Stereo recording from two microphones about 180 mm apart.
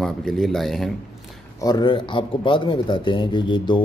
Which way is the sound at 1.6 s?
25° left (ahead or behind).